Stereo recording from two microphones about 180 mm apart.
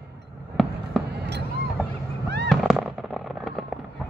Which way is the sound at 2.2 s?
70° right (ahead or behind).